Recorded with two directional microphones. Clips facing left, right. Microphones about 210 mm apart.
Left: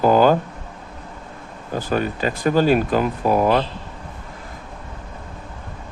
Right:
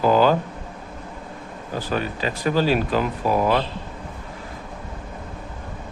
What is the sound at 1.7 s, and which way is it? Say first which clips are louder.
Speech: left 4 dB; 45° left (ahead or behind).